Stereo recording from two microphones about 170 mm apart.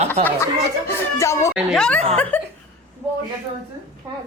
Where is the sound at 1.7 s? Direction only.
5° left (ahead or behind).